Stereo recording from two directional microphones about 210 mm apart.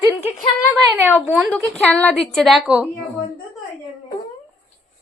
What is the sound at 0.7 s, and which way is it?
Speech, 10° right (ahead or behind).